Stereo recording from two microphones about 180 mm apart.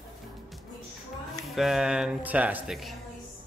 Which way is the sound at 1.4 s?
Centre (ahead or behind).